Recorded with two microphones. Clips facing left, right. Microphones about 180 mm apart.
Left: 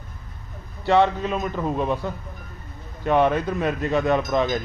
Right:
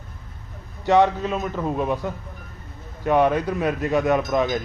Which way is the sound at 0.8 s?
15° right (ahead or behind).